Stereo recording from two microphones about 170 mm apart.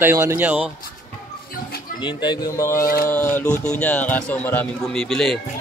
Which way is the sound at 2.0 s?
25° left (ahead or behind).